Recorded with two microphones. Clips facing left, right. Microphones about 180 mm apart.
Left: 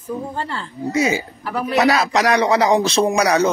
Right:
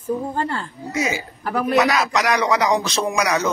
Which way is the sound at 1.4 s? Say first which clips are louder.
Right 2 dB; 50° right (ahead or behind).